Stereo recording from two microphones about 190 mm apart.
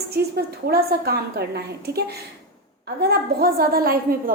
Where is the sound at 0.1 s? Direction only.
55° right (ahead or behind).